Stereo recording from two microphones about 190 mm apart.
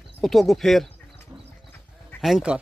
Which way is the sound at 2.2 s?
Centre (ahead or behind).